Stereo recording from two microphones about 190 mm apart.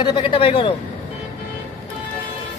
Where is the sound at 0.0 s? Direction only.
25° left (ahead or behind).